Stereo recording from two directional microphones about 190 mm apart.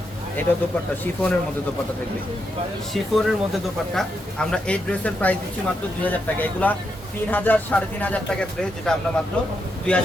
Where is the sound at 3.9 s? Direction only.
5° left (ahead or behind).